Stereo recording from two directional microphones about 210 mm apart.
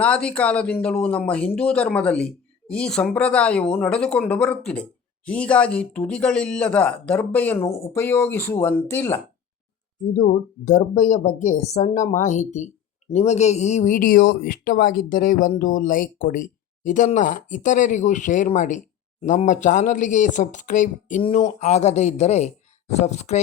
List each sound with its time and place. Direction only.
0.0 s speech: 5° left (ahead or behind)
10.0 s speech: 35° left (ahead or behind)